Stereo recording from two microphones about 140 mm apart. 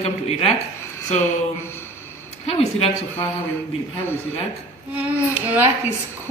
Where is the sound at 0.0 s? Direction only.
45° left (ahead or behind).